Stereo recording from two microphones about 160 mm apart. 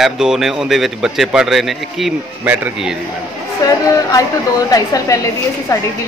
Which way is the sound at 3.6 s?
20° left (ahead or behind).